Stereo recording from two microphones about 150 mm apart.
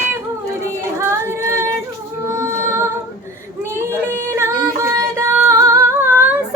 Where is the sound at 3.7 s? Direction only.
15° right (ahead or behind).